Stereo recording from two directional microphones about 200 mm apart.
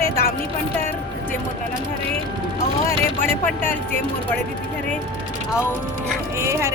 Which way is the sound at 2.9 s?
10° left (ahead or behind).